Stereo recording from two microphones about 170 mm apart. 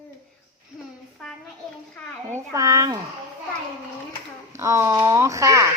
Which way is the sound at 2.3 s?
15° right (ahead or behind).